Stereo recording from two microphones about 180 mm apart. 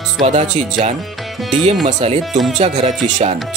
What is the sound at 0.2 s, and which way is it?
Speech, 40° right (ahead or behind).